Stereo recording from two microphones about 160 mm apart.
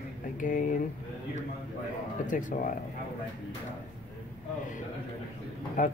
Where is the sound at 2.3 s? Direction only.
55° left (ahead or behind).